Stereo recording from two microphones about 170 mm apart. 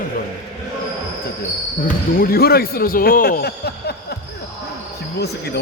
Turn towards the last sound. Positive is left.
turn(degrees=75)  # may be behind; listen again after turning